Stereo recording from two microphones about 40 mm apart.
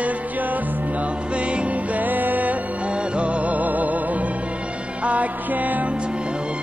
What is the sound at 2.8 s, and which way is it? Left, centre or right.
Music, right.